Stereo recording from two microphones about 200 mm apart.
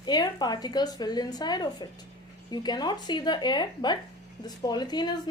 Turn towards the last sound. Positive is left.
turn(degrees=20)  # may be behind; listen again after turning